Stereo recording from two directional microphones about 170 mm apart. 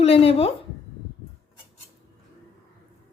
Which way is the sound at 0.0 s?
35° left (ahead or behind).